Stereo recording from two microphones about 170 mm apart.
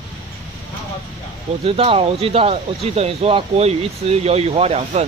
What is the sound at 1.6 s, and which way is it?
Speech, 35° right (ahead or behind).